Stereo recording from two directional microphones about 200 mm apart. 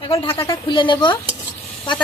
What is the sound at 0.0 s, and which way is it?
Speech, 30° left (ahead or behind).